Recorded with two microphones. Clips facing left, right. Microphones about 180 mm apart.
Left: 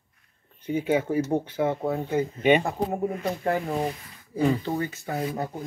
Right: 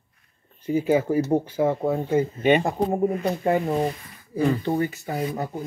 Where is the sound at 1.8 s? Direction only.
20° right (ahead or behind).